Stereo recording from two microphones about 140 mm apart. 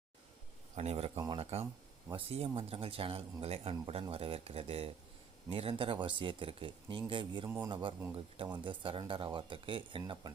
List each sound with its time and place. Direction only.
0.8 s speech: 50° right (ahead or behind)